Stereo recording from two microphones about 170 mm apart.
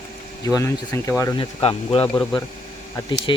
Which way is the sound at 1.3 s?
30° left (ahead or behind).